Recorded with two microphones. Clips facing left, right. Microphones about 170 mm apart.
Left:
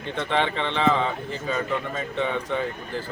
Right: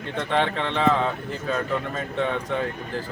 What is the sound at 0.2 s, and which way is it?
Speech, centre (ahead or behind).